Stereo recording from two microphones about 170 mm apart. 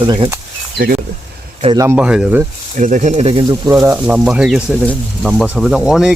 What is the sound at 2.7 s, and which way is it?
Speech, 45° right (ahead or behind).